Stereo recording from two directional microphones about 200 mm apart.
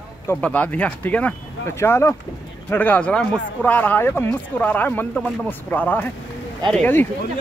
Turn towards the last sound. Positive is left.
turn(degrees=10)  # may be behind; listen again after turning